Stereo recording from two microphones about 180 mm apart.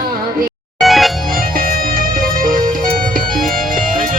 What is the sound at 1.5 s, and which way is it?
Music, 50° right (ahead or behind).